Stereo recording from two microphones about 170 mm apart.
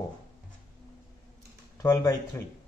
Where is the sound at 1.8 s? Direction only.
20° left (ahead or behind).